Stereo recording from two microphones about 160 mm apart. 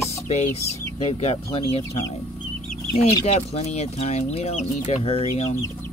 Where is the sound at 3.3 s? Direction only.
45° left (ahead or behind).